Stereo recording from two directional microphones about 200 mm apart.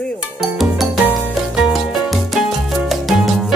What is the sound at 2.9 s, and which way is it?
Salsa music, centre (ahead or behind).